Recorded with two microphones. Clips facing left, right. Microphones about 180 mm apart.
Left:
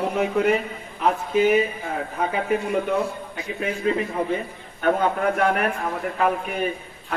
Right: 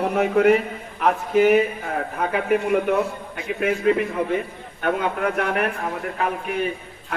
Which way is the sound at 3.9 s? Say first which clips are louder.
Right 3 dB; 60° right (ahead or behind).